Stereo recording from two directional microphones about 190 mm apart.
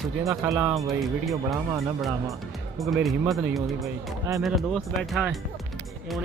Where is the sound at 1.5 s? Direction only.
Centre (ahead or behind).